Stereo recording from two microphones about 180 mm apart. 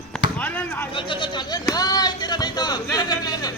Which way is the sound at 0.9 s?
25° left (ahead or behind).